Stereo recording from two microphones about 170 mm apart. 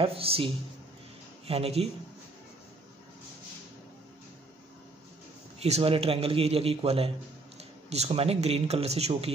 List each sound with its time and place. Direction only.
0.0 s speech: 35° right (ahead or behind)
1.5 s speech: 35° right (ahead or behind)
5.6 s speech: 35° right (ahead or behind)